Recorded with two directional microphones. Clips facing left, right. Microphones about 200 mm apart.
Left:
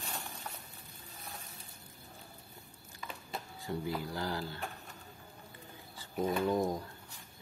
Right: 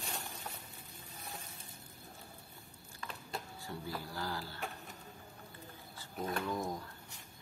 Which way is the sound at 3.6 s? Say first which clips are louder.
Left 10 dB; 15° left (ahead or behind).